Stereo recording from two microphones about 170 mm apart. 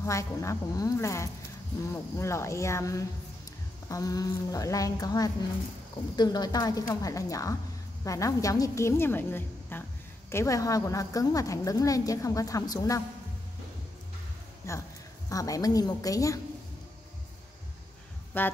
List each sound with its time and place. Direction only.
0.0 s a woman's voice: 15° left (ahead or behind)
14.7 s a woman's voice: 20° left (ahead or behind)
18.3 s a woman's voice: 10° left (ahead or behind)